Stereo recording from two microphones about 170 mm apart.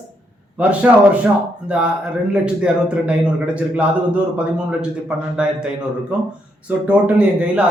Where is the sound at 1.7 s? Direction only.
5° right (ahead or behind).